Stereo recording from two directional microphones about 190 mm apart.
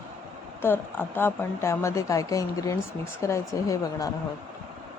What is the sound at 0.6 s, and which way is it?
A woman's voice, 10° left (ahead or behind).